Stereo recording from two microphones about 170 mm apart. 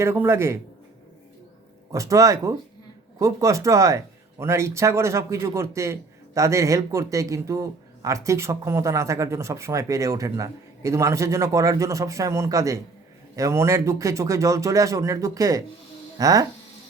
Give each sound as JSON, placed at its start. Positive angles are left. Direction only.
{"t": 0.0, "sound": "a man's voice", "side_deg": -15}
{"t": 1.9, "sound": "speech", "side_deg": -20}